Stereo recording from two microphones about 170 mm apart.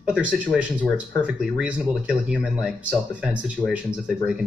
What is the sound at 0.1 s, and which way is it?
Speech, 5° right (ahead or behind).